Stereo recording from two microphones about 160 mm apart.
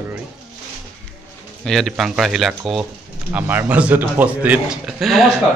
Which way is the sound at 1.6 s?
Centre (ahead or behind).